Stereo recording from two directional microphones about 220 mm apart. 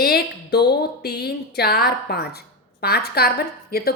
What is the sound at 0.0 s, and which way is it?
A woman's voice, 45° left (ahead or behind).